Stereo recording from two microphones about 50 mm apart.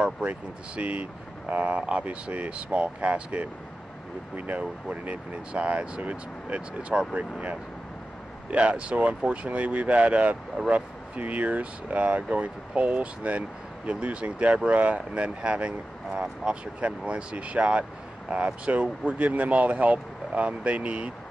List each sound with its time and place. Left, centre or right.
0.0 s speech: right
8.5 s speech: right